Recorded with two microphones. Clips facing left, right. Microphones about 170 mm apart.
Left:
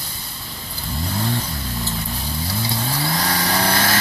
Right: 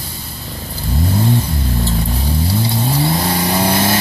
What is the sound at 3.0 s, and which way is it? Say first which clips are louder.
Vehicle: right 5 dB; 25° right (ahead or behind).